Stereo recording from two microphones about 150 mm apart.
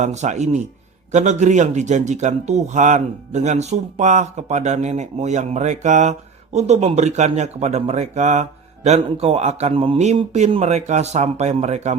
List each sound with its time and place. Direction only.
0.0 s speech: 50° right (ahead or behind)